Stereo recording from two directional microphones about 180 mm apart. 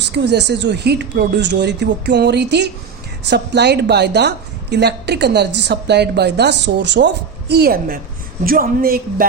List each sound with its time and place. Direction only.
0.1 s a woman's voice: 70° right (ahead or behind); by 9.2 s 55° right (ahead or behind)